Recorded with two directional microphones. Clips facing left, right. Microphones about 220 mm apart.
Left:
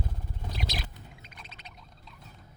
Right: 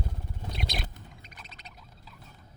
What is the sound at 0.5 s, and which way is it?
Bird, centre (ahead or behind).